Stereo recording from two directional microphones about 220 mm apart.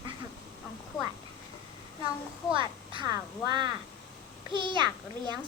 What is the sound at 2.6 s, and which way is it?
A child's voice, 20° right (ahead or behind).